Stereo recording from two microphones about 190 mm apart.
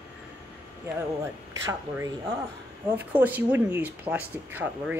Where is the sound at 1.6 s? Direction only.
15° right (ahead or behind).